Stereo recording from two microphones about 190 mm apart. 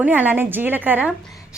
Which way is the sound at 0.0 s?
10° right (ahead or behind).